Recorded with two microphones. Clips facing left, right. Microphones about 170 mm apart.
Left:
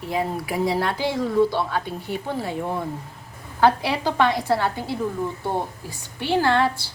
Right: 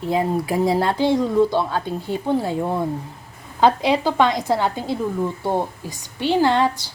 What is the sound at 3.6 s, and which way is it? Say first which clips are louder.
A woman's voice: right 3 dB; 20° right (ahead or behind).